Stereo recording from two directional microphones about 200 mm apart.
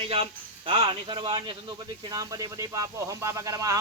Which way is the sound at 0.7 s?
25° right (ahead or behind).